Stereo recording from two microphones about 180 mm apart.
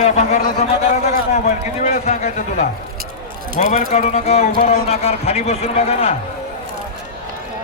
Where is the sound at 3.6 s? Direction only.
40° left (ahead or behind).